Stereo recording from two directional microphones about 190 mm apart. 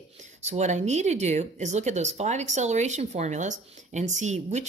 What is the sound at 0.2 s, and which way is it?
Speech, 40° right (ahead or behind).